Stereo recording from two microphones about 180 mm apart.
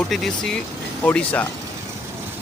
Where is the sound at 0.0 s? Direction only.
Centre (ahead or behind).